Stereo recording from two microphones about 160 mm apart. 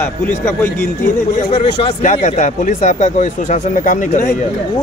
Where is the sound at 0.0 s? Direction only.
15° left (ahead or behind).